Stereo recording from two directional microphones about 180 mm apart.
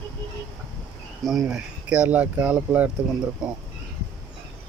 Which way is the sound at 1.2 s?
Centre (ahead or behind).